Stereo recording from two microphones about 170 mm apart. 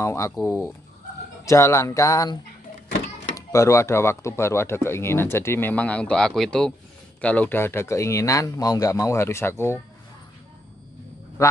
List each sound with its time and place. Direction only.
0.0 s speech: 15° left (ahead or behind)
3.3 s speech: 20° left (ahead or behind)